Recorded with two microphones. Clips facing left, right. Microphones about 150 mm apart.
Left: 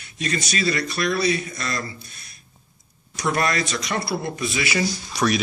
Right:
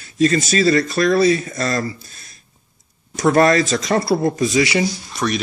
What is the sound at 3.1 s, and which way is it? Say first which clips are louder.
Speech: right 9 dB; 45° right (ahead or behind).